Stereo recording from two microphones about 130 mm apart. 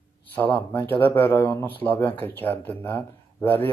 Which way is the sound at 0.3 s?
15° left (ahead or behind).